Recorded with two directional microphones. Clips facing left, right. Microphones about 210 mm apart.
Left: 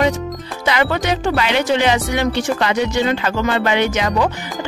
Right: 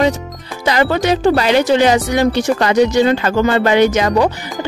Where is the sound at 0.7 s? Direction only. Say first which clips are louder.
Right 4 dB; 35° right (ahead or behind).